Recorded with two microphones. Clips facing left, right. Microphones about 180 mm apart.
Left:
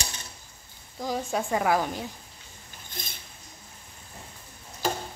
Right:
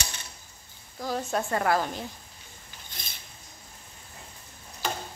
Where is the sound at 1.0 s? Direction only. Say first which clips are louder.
Even; 10° left (ahead or behind).